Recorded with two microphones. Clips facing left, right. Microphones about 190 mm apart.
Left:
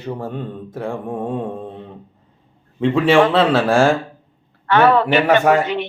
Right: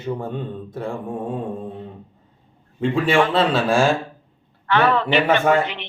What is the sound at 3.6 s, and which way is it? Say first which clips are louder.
Speech: left 3 dB; 55° left (ahead or behind).